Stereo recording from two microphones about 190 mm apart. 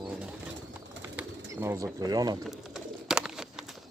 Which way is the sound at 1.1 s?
15° right (ahead or behind).